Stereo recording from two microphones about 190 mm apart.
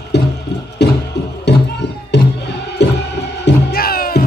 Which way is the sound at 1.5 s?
65° left (ahead or behind).